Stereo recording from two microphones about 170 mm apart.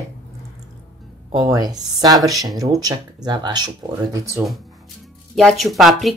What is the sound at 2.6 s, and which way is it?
Speech, 20° right (ahead or behind).